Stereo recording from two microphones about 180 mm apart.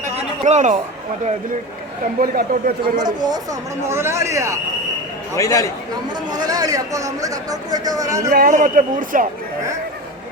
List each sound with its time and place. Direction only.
0.2 s a sound: 40° right (ahead or behind)
2.2 s a man's voice: 50° right (ahead or behind)
3.0 s speech: 25° right (ahead or behind)
5.4 s a man's voice: 20° left (ahead or behind)
6.3 s speech: 20° right (ahead or behind)
8.3 s a man's voice: 50° right (ahead or behind)